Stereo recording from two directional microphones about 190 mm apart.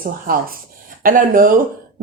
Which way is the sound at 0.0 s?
50° right (ahead or behind).